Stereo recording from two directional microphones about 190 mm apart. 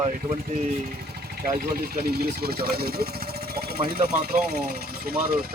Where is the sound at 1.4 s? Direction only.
50° right (ahead or behind).